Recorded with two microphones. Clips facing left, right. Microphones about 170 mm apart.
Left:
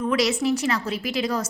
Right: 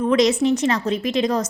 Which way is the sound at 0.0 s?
35° right (ahead or behind).